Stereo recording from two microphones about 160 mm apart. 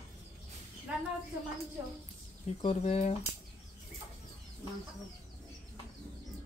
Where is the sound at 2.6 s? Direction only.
40° left (ahead or behind).